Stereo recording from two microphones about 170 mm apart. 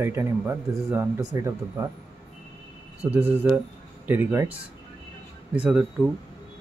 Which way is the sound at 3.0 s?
10° right (ahead or behind).